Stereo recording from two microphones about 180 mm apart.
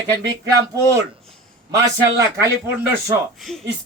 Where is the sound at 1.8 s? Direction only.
20° right (ahead or behind).